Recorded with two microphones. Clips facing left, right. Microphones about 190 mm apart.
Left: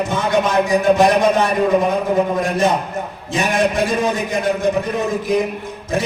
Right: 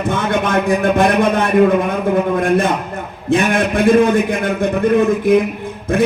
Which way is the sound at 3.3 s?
55° right (ahead or behind).